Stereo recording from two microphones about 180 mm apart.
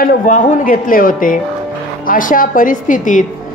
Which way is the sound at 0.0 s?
50° left (ahead or behind).